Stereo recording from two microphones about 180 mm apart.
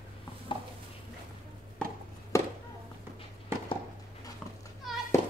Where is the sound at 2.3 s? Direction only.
15° left (ahead or behind).